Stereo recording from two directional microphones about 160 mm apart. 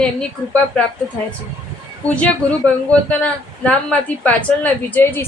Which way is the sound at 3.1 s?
10° left (ahead or behind).